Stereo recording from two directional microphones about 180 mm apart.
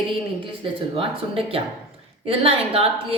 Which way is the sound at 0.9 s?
30° right (ahead or behind).